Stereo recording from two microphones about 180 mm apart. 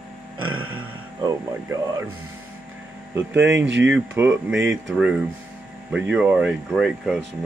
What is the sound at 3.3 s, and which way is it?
Speech, 90° right.